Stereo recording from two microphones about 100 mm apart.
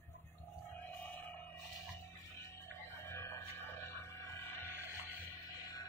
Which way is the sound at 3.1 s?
30° left (ahead or behind).